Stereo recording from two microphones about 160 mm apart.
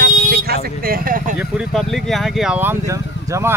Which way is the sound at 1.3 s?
5° right (ahead or behind).